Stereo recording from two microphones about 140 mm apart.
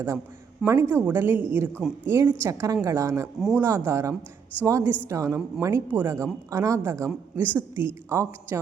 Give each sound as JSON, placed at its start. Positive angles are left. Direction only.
{"t": 0.6, "sound": "a woman's voice", "side_deg": -15}